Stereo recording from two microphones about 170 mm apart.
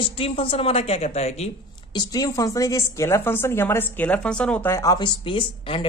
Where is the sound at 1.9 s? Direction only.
25° left (ahead or behind).